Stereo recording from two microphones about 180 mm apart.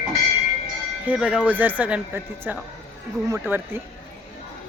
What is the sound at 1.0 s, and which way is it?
Speech, 5° right (ahead or behind).